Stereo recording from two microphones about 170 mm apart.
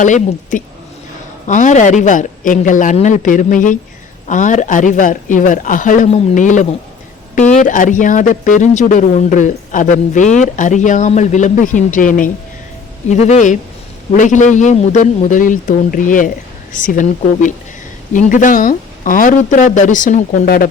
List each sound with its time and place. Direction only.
0.0 s speech: 50° left (ahead or behind)